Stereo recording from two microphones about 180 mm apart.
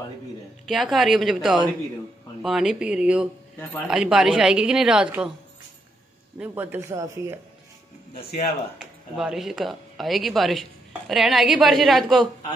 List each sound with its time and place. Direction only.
0.7 s a woman's voice: centre (ahead or behind)
6.3 s speech: 10° right (ahead or behind)
8.2 s speech: 60° left (ahead or behind)
9.1 s a woman's voice: centre (ahead or behind)